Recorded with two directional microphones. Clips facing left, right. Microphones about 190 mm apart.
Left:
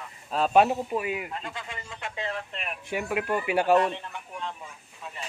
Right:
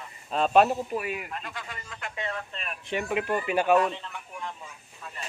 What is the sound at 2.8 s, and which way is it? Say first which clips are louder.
Speech: right 1 dB; 5° left (ahead or behind).